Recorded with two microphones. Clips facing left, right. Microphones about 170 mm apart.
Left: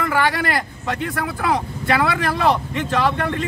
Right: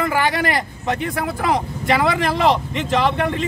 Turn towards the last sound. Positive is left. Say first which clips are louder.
# right 1 dB
turn(degrees=-20)  # may be behind; listen again after turning